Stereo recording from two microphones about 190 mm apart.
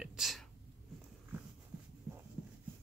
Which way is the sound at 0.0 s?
5° right (ahead or behind).